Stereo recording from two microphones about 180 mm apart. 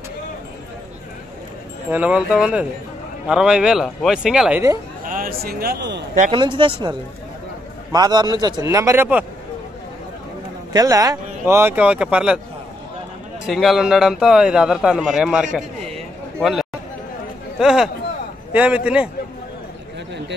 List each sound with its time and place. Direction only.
1.9 s a man's voice: 5° right (ahead or behind)
5.0 s speech: 50° right (ahead or behind); by 6.0 s 70° right (ahead or behind)
6.3 s a man's voice: 25° right (ahead or behind)
10.7 s speech: 20° right (ahead or behind)
13.5 s a man's voice: centre (ahead or behind)